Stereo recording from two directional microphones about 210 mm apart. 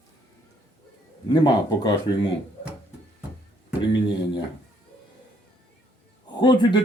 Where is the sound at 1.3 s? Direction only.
20° left (ahead or behind).